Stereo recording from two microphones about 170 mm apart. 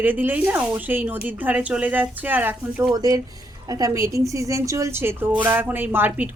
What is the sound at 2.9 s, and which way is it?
Speech, 20° right (ahead or behind).